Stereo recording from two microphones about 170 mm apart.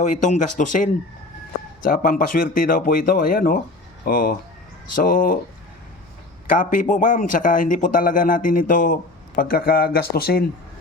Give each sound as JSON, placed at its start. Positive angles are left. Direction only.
{"t": 0.0, "sound": "speech", "side_deg": 45}
{"t": 6.5, "sound": "speech", "side_deg": 55}